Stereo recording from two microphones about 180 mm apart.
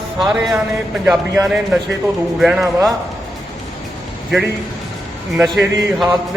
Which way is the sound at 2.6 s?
20° right (ahead or behind).